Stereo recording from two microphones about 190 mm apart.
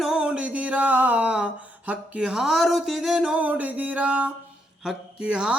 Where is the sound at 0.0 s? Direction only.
5° right (ahead or behind).